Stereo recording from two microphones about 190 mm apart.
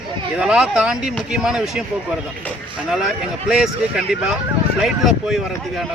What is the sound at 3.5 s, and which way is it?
A man's voice, 5° right (ahead or behind).